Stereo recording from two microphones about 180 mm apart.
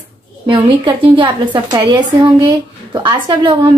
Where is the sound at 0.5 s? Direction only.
30° right (ahead or behind).